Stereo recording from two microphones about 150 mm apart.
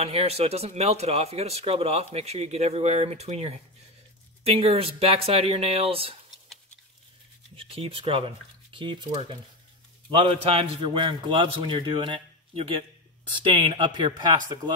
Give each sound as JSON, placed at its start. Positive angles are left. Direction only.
{"t": 0.0, "sound": "a man's voice", "side_deg": -45}
{"t": 7.5, "sound": "a man's voice", "side_deg": -40}
{"t": 10.1, "sound": "a man's voice", "side_deg": -40}